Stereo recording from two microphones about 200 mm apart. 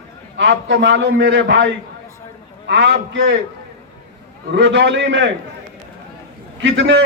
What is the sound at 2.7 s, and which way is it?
Speech, 65° right (ahead or behind).